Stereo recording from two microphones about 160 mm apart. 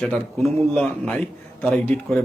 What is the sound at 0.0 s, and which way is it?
A man's voice, centre (ahead or behind).